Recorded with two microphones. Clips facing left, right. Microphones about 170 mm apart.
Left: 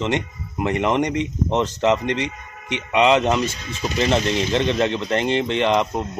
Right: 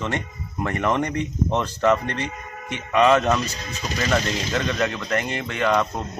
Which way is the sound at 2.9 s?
15° left (ahead or behind).